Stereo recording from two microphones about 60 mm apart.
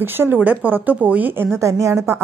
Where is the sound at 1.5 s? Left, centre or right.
Right.